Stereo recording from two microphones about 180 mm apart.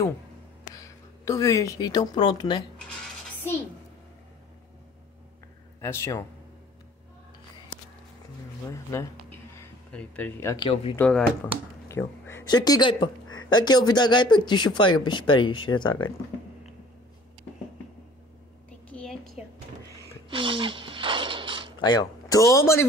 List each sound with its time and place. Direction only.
0.7 s a woman's voice: 20° left (ahead or behind)
5.8 s speech: 15° left (ahead or behind)
8.6 s speech: 15° left (ahead or behind)
9.3 s a sound: 10° left (ahead or behind)
10.5 s speech: 25° left (ahead or behind)
11.0 s speech: 5° left (ahead or behind)
11.9 s a sound: 15° left (ahead or behind)
12.4 s speech: 20° left (ahead or behind)
18.9 s a sound: 5° left (ahead or behind)
19.4 s drawer open or close: 5° right (ahead or behind)
20.2 s a sound: 30° right (ahead or behind)
21.7 s speech: 20° left (ahead or behind)